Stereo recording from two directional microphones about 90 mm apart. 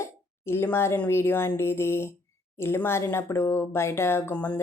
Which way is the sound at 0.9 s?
25° left (ahead or behind).